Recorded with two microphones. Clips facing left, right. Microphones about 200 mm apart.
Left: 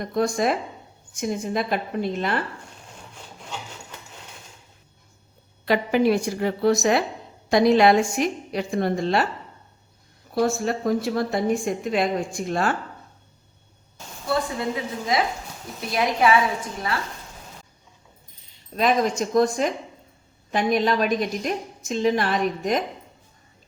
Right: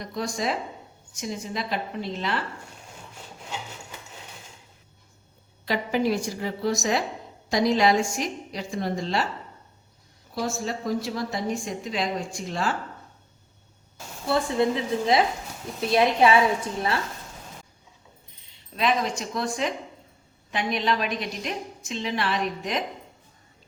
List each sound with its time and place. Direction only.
0.0 s a woman's voice: 55° left (ahead or behind)
5.6 s a woman's voice: 60° left (ahead or behind)
10.3 s a woman's voice: 60° left (ahead or behind)
14.3 s a woman's voice: 25° right (ahead or behind)
18.8 s a woman's voice: 45° left (ahead or behind)